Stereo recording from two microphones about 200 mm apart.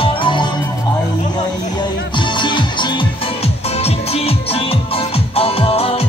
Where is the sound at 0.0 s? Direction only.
25° left (ahead or behind).